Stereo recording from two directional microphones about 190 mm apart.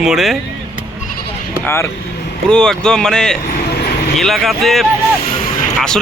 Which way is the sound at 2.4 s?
5° left (ahead or behind).